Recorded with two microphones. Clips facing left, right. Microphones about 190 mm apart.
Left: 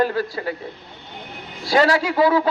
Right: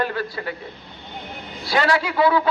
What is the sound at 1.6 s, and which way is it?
Speech, 40° left (ahead or behind).